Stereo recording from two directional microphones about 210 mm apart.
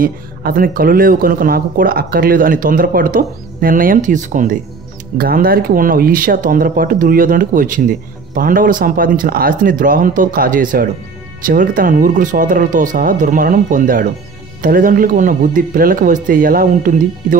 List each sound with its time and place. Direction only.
0.0 s speech: 45° right (ahead or behind)